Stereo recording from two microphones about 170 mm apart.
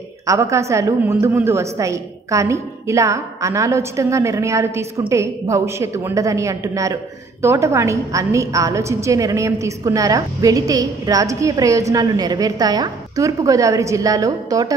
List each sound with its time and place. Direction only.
0.3 s a woman's voice: 15° right (ahead or behind)